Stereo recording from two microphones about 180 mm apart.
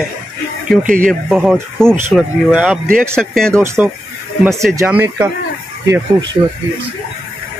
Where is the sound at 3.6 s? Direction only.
15° right (ahead or behind).